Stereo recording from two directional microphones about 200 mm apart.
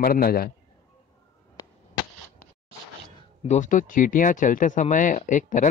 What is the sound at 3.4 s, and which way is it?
Speech, 40° left (ahead or behind).